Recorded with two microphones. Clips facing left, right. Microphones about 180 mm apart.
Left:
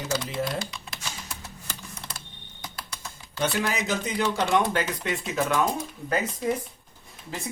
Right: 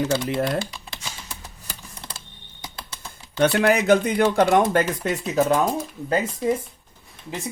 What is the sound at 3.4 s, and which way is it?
Speech, 65° right (ahead or behind).